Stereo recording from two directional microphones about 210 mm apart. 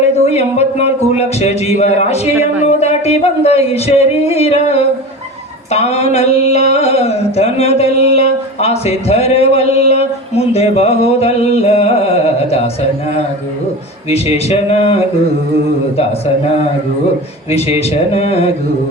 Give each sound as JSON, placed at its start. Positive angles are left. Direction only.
{"t": 0.3, "sound": "a man's voice", "side_deg": 30}
{"t": 5.7, "sound": "a sound", "side_deg": 30}
{"t": 6.7, "sound": "speech", "side_deg": 30}
{"t": 14.1, "sound": "speech", "side_deg": 30}
{"t": 17.5, "sound": "speech", "side_deg": 30}